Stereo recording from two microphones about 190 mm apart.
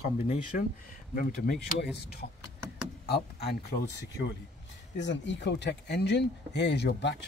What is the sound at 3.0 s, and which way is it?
Speech, 60° left (ahead or behind).